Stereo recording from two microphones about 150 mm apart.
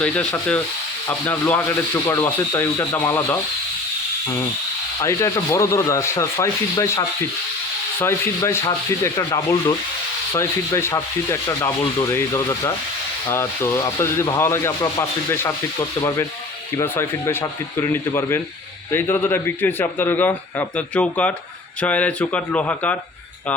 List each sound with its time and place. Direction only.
0.0 s a man's voice: 5° left (ahead or behind)
4.9 s sanding: 20° left (ahead or behind)
8.4 s sanding: 25° left (ahead or behind)
16.7 s a man's voice: 15° left (ahead or behind)